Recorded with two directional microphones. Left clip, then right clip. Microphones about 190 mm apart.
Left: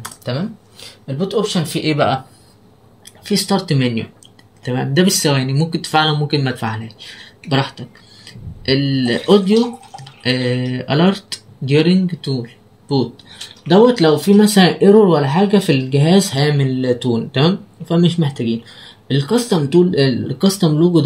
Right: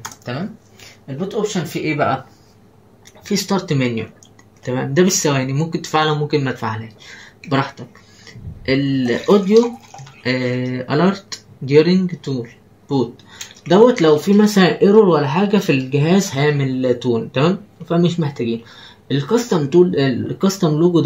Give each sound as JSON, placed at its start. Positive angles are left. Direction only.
{"t": 1.0, "sound": "speech", "side_deg": 50}
{"t": 3.3, "sound": "speech", "side_deg": 30}
{"t": 15.0, "sound": "speech", "side_deg": 30}